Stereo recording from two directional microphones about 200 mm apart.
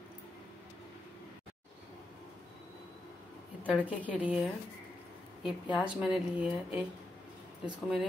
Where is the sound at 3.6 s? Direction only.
10° right (ahead or behind).